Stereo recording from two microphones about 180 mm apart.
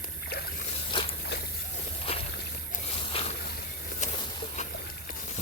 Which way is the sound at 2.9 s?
35° left (ahead or behind).